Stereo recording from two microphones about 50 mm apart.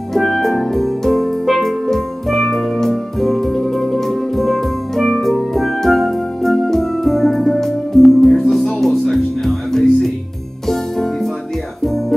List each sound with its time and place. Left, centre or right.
0.1 s music: centre